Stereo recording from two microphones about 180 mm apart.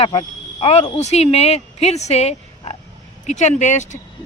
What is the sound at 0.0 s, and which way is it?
A man's voice, 30° left (ahead or behind).